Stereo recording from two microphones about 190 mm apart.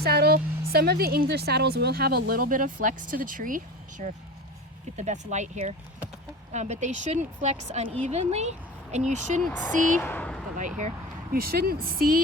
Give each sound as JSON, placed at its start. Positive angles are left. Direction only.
{"t": 0.0, "sound": "a woman's voice", "side_deg": -55}
{"t": 9.4, "sound": "speech", "side_deg": 10}
{"t": 10.8, "sound": "a woman's voice", "side_deg": -45}